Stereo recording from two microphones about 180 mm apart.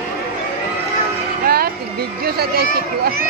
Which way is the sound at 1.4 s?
55° right (ahead or behind).